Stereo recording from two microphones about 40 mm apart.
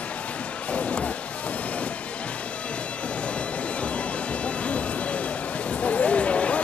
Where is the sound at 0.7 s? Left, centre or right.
Left.